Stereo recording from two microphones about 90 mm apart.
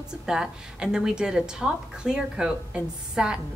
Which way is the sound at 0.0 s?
5° right (ahead or behind).